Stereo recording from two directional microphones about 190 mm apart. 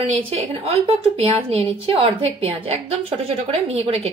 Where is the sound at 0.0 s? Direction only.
35° right (ahead or behind).